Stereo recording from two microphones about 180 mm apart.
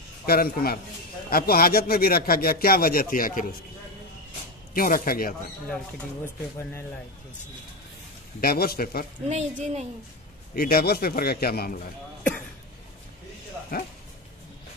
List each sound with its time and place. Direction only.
0.3 s a man's voice: 55° left (ahead or behind)
4.7 s speech: 55° left (ahead or behind)
8.4 s a man's voice: 60° left (ahead or behind)
9.3 s a woman's voice: 40° right (ahead or behind)
10.5 s a man's voice: 55° left (ahead or behind)
13.7 s a man's voice: 60° left (ahead or behind)